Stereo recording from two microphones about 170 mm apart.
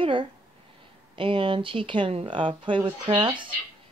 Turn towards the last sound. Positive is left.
turn(degrees=-30)  # may be behind; listen again after turning